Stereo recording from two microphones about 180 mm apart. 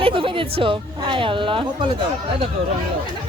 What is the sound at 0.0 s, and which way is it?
Speech, 30° right (ahead or behind).